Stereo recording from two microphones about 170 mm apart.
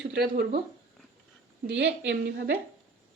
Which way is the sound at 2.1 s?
70° right (ahead or behind).